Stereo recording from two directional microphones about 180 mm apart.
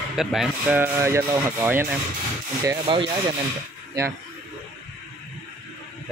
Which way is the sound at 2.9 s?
25° right (ahead or behind).